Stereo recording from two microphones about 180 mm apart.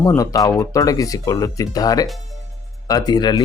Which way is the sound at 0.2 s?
20° left (ahead or behind).